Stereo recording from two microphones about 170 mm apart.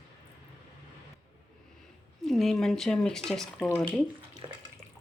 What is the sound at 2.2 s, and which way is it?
Speech, centre (ahead or behind).